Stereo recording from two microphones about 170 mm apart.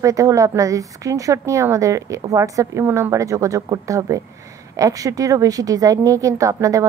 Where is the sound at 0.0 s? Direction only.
20° right (ahead or behind).